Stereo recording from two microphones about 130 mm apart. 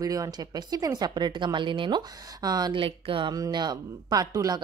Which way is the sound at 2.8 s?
40° right (ahead or behind).